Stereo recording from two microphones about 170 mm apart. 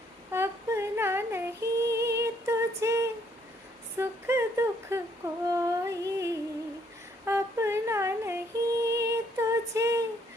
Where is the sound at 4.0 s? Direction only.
15° right (ahead or behind).